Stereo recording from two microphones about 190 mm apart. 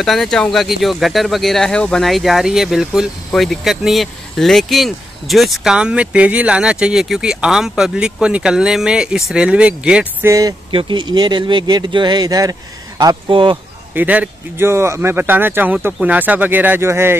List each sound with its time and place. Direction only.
0.0 s speech: centre (ahead or behind)
10.3 s speech: 25° right (ahead or behind)
13.9 s speech: 10° right (ahead or behind)